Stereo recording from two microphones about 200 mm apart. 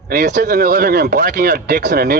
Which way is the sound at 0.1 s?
55° right (ahead or behind).